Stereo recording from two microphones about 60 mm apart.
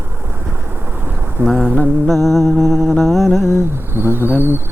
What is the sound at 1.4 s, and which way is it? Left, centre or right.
Speech, right.